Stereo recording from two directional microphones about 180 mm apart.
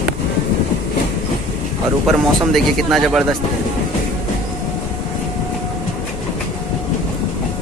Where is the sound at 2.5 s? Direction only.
Centre (ahead or behind).